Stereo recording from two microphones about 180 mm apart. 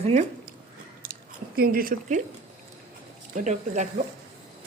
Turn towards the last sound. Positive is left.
turn(degrees=-45)  # may be behind; listen again after turning